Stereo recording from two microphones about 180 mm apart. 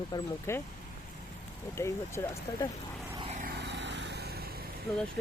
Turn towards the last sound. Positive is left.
turn(degrees=0)  # may be behind; listen again after turning